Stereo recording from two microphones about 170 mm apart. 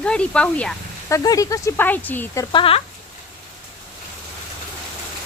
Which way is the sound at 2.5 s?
35° left (ahead or behind).